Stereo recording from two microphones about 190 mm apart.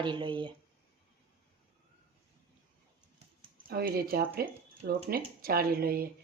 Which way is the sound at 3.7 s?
55° right (ahead or behind).